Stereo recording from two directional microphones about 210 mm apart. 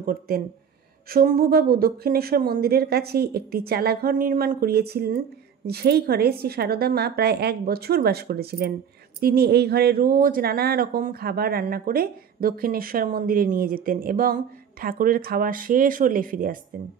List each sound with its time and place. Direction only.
0.0 s speech: 45° right (ahead or behind)